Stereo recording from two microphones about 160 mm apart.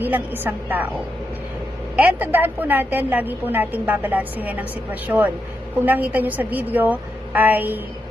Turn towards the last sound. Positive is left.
turn(degrees=-10)  # may be behind; listen again after turning